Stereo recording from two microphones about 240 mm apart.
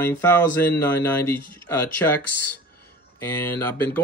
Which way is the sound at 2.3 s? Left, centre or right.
Left.